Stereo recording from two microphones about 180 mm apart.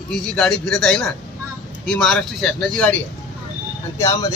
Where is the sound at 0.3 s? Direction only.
5° left (ahead or behind).